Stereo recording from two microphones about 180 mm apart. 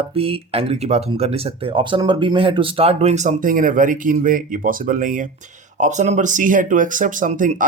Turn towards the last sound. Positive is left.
turn(degrees=-45)  # may be behind; listen again after turning